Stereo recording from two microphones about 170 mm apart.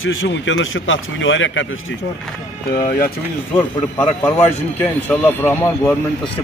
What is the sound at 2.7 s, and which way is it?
Speech, 60° left (ahead or behind).